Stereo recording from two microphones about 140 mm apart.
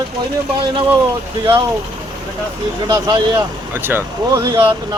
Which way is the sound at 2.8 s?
35° right (ahead or behind).